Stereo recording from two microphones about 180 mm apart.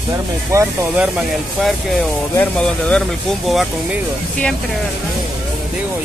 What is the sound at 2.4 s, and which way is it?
Speech, 5° left (ahead or behind).